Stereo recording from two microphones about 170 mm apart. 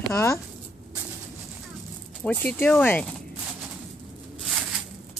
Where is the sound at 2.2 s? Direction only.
10° left (ahead or behind).